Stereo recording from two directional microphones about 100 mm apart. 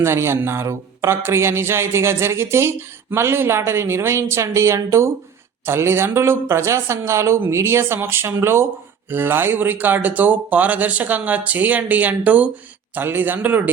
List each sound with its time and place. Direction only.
0.0 s a man's voice: 25° right (ahead or behind)